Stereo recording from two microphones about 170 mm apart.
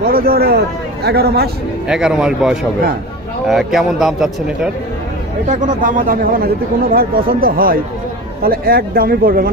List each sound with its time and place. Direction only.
0.0 s a man's voice: 60° right (ahead or behind)
1.9 s speech: 5° right (ahead or behind)
5.5 s a man's voice: 50° right (ahead or behind)